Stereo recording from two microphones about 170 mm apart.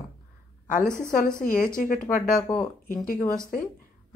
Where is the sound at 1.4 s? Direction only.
50° left (ahead or behind).